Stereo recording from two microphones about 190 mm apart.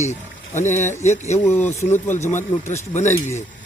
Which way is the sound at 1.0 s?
40° left (ahead or behind).